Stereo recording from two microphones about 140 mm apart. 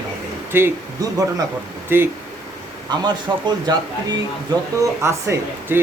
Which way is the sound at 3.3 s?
30° right (ahead or behind).